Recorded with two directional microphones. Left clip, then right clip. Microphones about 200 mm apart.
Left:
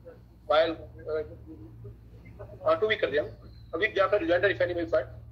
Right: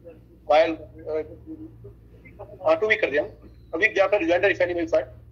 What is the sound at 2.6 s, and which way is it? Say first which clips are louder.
A man's voice: right 5 dB; 20° right (ahead or behind).